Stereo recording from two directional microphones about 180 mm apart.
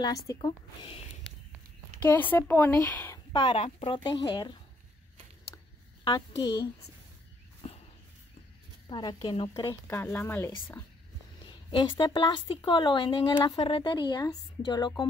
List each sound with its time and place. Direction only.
0.0 s speech: 20° left (ahead or behind)
2.0 s speech: 10° left (ahead or behind)
3.3 s speech: 30° left (ahead or behind)
6.0 s speech: 25° left (ahead or behind)
7.6 s a sound: 30° left (ahead or behind)
8.8 s speech: 25° left (ahead or behind)
9.8 s speech: 15° left (ahead or behind)
11.7 s speech: 25° left (ahead or behind)